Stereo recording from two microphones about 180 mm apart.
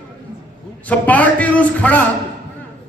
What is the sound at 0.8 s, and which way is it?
A man's voice, 10° left (ahead or behind).